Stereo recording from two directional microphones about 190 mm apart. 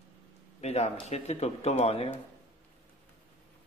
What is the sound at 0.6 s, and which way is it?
Speech, 35° left (ahead or behind).